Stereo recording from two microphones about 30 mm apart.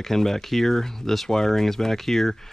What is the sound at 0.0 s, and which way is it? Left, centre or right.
Speech, centre.